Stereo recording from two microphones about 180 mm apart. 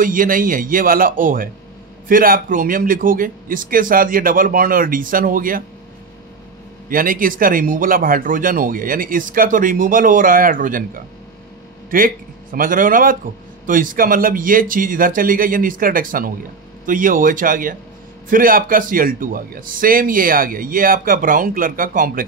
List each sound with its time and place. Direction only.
0.0 s speech: 50° right (ahead or behind)
6.9 s speech: 50° right (ahead or behind)
11.9 s speech: 50° right (ahead or behind)